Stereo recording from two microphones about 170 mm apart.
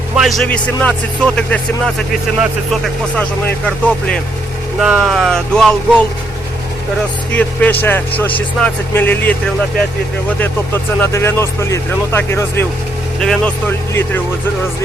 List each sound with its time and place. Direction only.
0.2 s speech: centre (ahead or behind)
4.8 s speech: centre (ahead or behind)
7.3 s speech: 10° left (ahead or behind)
10.4 s speech: 10° left (ahead or behind)
13.1 s speech: 5° left (ahead or behind)